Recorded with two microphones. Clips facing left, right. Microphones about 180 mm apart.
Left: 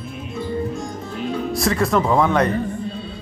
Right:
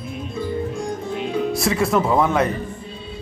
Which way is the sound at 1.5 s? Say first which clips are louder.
Left 2 dB; centre (ahead or behind).